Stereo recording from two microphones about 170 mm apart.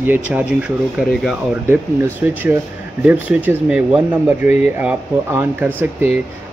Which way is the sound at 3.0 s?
10° right (ahead or behind).